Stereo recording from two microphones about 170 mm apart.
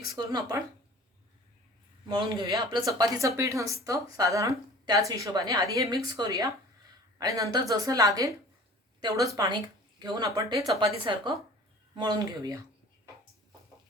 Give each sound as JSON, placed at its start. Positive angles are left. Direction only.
{"t": 0.3, "sound": "a woman's voice", "side_deg": -20}
{"t": 2.0, "sound": "a woman's voice", "side_deg": -30}